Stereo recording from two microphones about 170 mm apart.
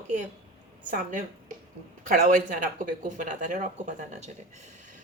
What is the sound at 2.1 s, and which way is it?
Speech, 55° right (ahead or behind).